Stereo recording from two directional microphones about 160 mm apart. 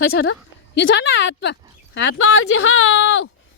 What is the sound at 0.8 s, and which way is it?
Speech, 90° left.